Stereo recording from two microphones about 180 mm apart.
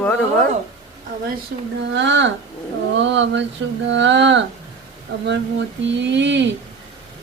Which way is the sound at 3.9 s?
90° right.